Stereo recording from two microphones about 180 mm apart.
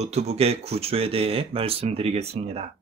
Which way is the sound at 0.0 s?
35° right (ahead or behind).